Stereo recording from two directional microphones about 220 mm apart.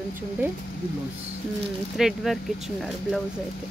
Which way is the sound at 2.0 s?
Centre (ahead or behind).